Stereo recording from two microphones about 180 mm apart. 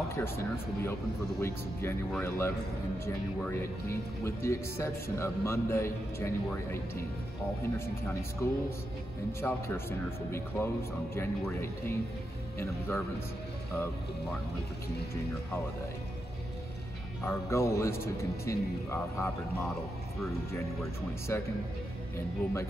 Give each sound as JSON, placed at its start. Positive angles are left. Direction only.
{"t": 0.1, "sound": "speech", "side_deg": 15}
{"t": 17.2, "sound": "speech", "side_deg": 15}
{"t": 21.3, "sound": "speech", "side_deg": 15}